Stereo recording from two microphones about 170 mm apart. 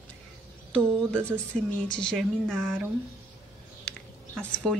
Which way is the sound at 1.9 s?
5° left (ahead or behind).